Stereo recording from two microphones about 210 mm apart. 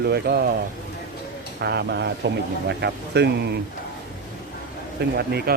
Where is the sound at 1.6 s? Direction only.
50° right (ahead or behind).